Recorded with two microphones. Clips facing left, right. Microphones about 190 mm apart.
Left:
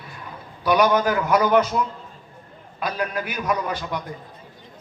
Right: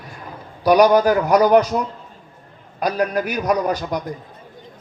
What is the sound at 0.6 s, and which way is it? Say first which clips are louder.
A man's voice: right 6 dB; 40° right (ahead or behind).